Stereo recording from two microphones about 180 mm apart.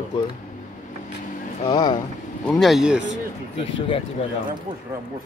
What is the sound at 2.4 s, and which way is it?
Speech, centre (ahead or behind).